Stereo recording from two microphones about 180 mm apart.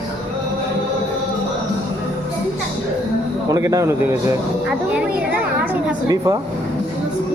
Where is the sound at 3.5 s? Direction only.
20° right (ahead or behind).